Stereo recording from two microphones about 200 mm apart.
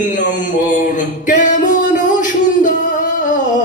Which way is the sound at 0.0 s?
40° left (ahead or behind).